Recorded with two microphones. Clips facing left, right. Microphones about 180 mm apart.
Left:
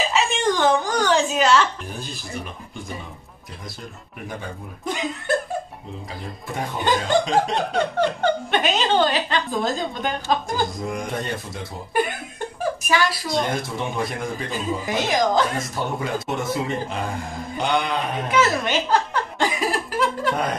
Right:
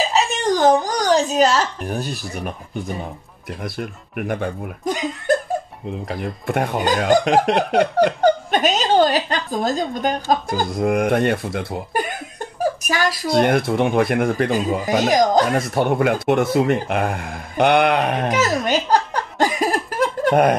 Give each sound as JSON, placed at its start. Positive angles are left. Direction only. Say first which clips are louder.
{"t": 0.1, "sound": "a sound", "louder": "right 2 dB", "side_deg": -40}
{"t": 2.0, "sound": "speech", "louder": "right 6 dB", "side_deg": -55}
{"t": 3.6, "sound": "speech", "louder": "right 9 dB", "side_deg": -65}
{"t": 4.8, "sound": "speech", "louder": "right 3 dB", "side_deg": -40}
{"t": 6.0, "sound": "speech", "louder": "right 9 dB", "side_deg": -65}
{"t": 8.2, "sound": "speech", "louder": "right 5 dB", "side_deg": -40}
{"t": 10.8, "sound": "speech", "louder": "right 10 dB", "side_deg": -65}
{"t": 12.8, "sound": "speech", "louder": "right 1 dB", "side_deg": -45}
{"t": 13.3, "sound": "speech", "louder": "right 8 dB", "side_deg": -65}
{"t": 14.5, "sound": "speech", "louder": "right 6 dB", "side_deg": -40}
{"t": 15.5, "sound": "speech", "louder": "right 8 dB", "side_deg": -65}
{"t": 18.3, "sound": "laughter", "louder": "left 2 dB", "side_deg": -40}